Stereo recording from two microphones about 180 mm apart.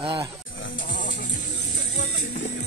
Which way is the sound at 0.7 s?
50° left (ahead or behind).